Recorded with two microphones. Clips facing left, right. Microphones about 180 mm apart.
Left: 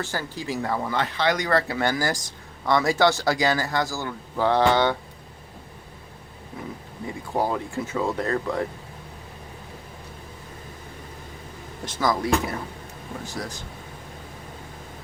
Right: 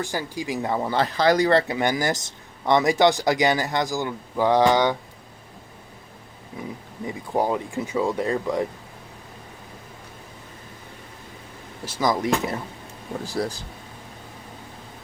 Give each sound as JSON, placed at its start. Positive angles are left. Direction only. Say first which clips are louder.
{"t": 0.0, "sound": "speech", "louder": "right 2 dB", "side_deg": -15}
{"t": 0.9, "sound": "speech", "louder": "right 7 dB", "side_deg": -40}
{"t": 7.3, "sound": "speech", "louder": "right 2 dB", "side_deg": -15}
{"t": 11.9, "sound": "speech", "louder": "right 1 dB", "side_deg": -20}
{"t": 13.2, "sound": "speech", "louder": "right 8 dB", "side_deg": -35}